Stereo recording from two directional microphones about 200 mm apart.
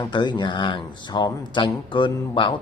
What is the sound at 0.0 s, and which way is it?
Speech, 20° left (ahead or behind).